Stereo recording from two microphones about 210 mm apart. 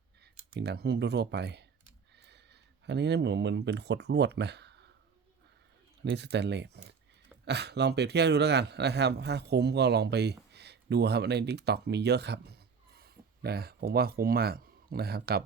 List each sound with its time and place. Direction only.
0.5 s a man's voice: 50° right (ahead or behind)
6.0 s a man's voice: 55° right (ahead or behind)